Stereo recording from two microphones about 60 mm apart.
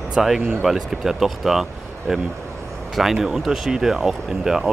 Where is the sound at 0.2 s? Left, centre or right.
Centre.